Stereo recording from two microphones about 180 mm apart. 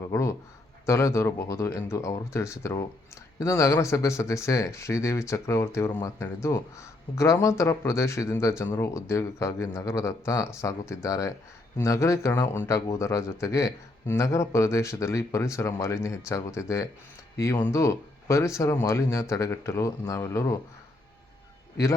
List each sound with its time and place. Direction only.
0.1 s speech: 15° left (ahead or behind)